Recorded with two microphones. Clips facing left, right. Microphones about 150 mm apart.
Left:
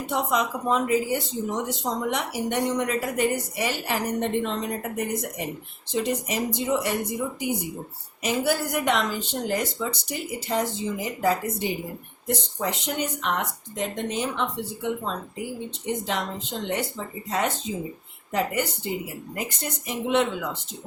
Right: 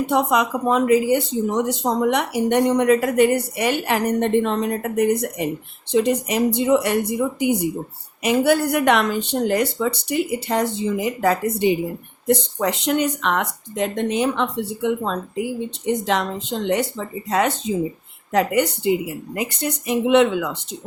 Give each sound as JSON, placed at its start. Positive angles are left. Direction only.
{"t": 0.1, "sound": "speech", "side_deg": -70}
{"t": 16.0, "sound": "speech", "side_deg": -80}
{"t": 17.2, "sound": "speech", "side_deg": -90}
{"t": 18.3, "sound": "a woman's voice", "side_deg": -75}